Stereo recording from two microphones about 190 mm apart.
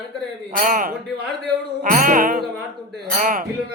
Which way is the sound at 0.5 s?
45° right (ahead or behind).